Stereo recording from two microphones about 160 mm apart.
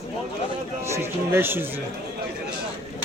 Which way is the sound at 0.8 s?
15° right (ahead or behind).